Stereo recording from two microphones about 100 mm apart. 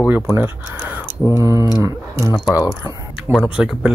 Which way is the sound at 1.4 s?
30° right (ahead or behind).